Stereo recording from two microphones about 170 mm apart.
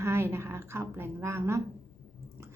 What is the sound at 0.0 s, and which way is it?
A woman's voice, 15° right (ahead or behind).